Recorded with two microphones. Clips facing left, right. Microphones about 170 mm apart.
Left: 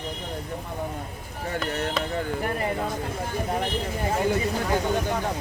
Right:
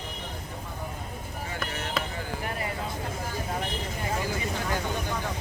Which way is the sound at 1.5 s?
60° left (ahead or behind).